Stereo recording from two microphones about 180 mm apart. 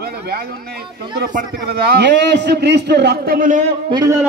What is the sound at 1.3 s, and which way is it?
A man's voice, 60° right (ahead or behind).